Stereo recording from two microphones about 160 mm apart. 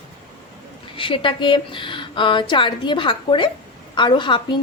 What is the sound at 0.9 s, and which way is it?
A woman's voice, 30° left (ahead or behind).